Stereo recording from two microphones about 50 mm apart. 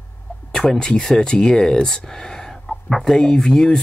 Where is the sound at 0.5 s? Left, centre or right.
Centre.